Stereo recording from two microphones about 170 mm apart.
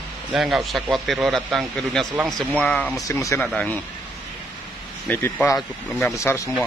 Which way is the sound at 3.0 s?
20° left (ahead or behind).